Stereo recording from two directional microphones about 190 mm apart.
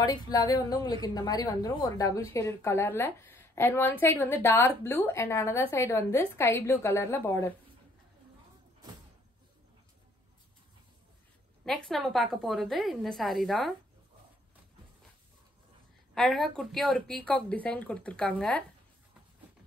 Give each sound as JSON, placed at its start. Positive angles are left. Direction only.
{"t": 0.0, "sound": "a woman's voice", "side_deg": 20}
{"t": 11.6, "sound": "speech", "side_deg": 0}
{"t": 16.2, "sound": "speech", "side_deg": 0}